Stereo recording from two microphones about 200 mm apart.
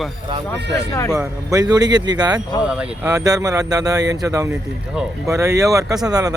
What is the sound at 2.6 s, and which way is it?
Speech, 5° right (ahead or behind).